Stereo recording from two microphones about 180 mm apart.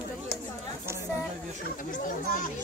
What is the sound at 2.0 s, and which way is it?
Speech, 45° left (ahead or behind).